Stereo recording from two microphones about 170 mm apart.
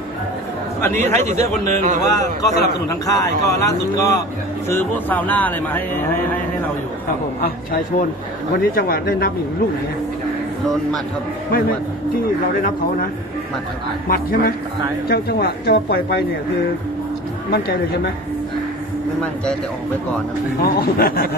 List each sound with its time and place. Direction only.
0.7 s a man's voice: 15° left (ahead or behind)
1.2 s speech: 45° right (ahead or behind)
2.0 s speech: 20° left (ahead or behind)
8.7 s speech: 60° left (ahead or behind)
14.0 s speech: 55° left (ahead or behind)
17.5 s speech: 65° left (ahead or behind)
20.6 s speech: 60° left (ahead or behind)